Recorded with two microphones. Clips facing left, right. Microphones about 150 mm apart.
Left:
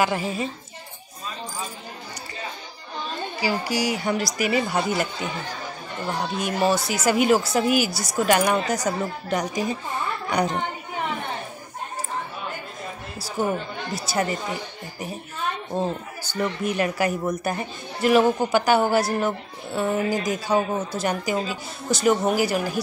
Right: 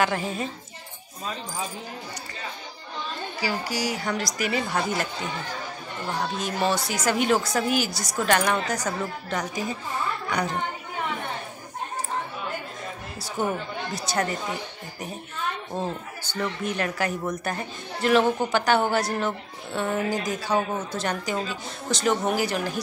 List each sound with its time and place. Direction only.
0.0 s a woman's voice: 10° left (ahead or behind)
3.3 s a woman's voice: 15° left (ahead or behind)
6.3 s a woman's voice: 10° left (ahead or behind)
13.4 s a woman's voice: 5° left (ahead or behind)
16.3 s a woman's voice: 10° left (ahead or behind)